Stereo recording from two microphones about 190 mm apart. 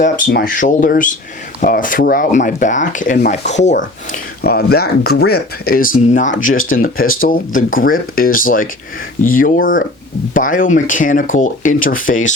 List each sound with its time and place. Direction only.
0.3 s speech: 45° left (ahead or behind)
4.4 s speech: 55° left (ahead or behind)